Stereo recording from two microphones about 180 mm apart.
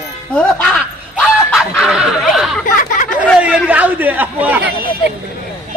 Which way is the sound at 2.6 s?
45° left (ahead or behind).